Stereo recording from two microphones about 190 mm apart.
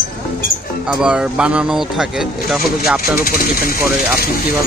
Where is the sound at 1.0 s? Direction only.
5° right (ahead or behind).